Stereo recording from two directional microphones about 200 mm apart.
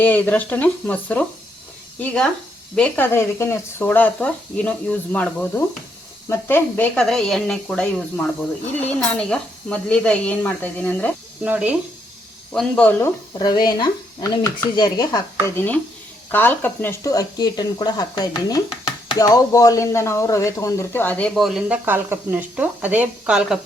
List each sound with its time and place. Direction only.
0.0 s speech: 10° left (ahead or behind)
11.4 s speech: 10° right (ahead or behind)
12.5 s speech: 5° left (ahead or behind)
13.4 s speech: 20° left (ahead or behind); by 23.6 s 5° right (ahead or behind)